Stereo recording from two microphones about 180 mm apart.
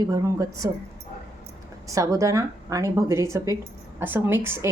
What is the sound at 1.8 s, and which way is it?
Speech, 20° right (ahead or behind).